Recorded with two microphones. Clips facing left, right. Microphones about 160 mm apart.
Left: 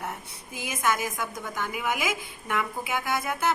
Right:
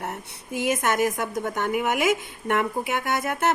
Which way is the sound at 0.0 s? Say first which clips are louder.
Right 3 dB; 65° right (ahead or behind).